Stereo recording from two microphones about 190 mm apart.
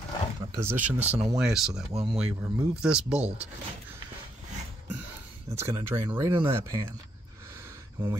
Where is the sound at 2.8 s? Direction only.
5° right (ahead or behind).